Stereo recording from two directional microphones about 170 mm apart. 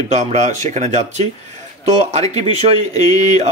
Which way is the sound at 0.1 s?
40° right (ahead or behind).